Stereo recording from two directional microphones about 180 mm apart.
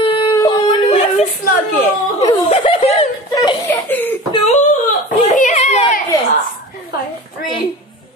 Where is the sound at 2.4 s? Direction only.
35° left (ahead or behind).